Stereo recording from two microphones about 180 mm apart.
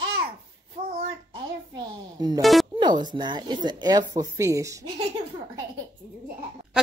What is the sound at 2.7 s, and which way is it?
Speech, 25° right (ahead or behind).